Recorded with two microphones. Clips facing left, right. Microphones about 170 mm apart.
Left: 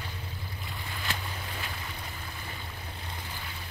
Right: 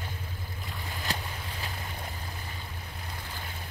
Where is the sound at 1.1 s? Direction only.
40° right (ahead or behind).